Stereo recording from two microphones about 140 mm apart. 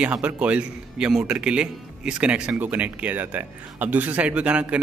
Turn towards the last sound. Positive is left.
turn(degrees=-10)  # may be behind; listen again after turning